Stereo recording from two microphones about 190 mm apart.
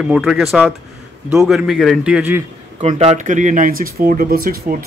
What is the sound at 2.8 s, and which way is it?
Speech, 35° right (ahead or behind).